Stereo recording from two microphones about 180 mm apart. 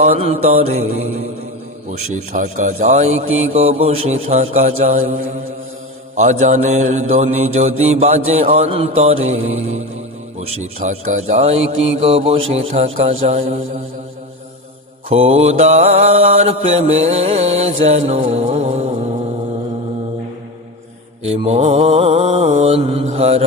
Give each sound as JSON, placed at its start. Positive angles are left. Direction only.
{"t": 0.0, "sound": "mantra", "side_deg": -35}
{"t": 15.1, "sound": "mantra", "side_deg": -35}
{"t": 21.4, "sound": "mantra", "side_deg": -35}